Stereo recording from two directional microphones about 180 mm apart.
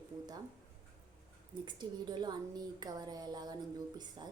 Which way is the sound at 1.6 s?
25° right (ahead or behind).